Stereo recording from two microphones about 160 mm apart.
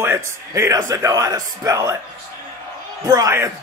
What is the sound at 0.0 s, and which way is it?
A man's voice, 15° right (ahead or behind).